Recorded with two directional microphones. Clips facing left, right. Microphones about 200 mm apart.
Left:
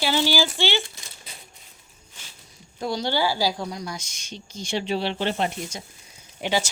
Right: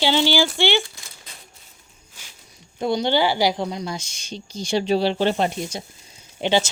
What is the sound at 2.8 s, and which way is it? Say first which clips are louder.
A woman's voice: right 5 dB; 20° right (ahead or behind).